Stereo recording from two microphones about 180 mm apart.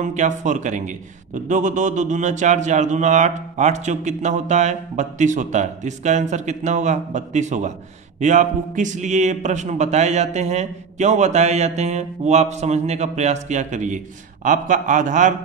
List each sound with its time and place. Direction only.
0.0 s a man's voice: 40° right (ahead or behind)